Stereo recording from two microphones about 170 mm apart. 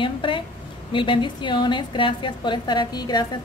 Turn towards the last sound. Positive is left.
turn(degrees=25)  # may be behind; listen again after turning